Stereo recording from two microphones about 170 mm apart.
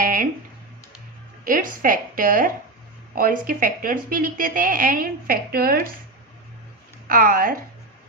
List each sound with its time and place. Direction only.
0.0 s a sound: 55° right (ahead or behind)
1.5 s a woman's voice: 55° right (ahead or behind)
7.1 s a woman's voice: 55° right (ahead or behind)